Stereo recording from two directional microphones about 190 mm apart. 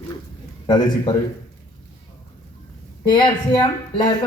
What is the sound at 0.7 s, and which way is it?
Speech, 25° left (ahead or behind).